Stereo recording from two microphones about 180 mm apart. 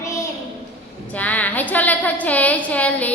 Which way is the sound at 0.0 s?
15° left (ahead or behind).